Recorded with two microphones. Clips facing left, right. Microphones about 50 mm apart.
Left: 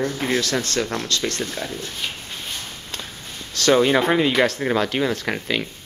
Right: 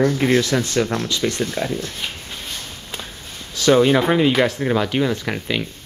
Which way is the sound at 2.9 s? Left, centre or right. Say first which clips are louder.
Right 2 dB; centre.